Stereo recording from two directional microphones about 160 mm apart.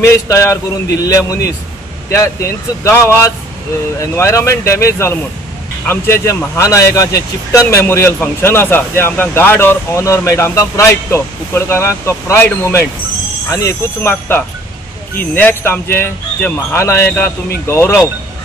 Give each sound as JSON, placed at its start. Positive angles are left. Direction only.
{"t": 0.0, "sound": "speech", "side_deg": 15}